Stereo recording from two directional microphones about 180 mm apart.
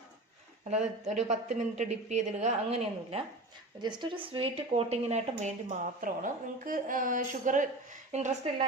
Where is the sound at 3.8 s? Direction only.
25° right (ahead or behind).